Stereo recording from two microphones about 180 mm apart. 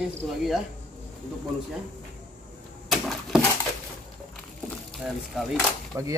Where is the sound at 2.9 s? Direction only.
Centre (ahead or behind).